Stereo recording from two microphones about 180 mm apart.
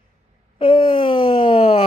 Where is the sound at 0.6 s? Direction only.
30° left (ahead or behind).